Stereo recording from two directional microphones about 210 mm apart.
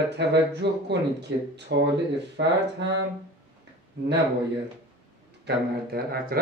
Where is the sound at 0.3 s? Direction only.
55° right (ahead or behind).